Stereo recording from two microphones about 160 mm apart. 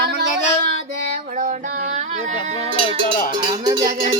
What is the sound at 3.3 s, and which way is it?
Speech, 25° right (ahead or behind).